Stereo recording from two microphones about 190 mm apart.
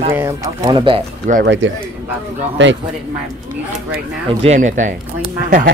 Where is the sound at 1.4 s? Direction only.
75° right (ahead or behind).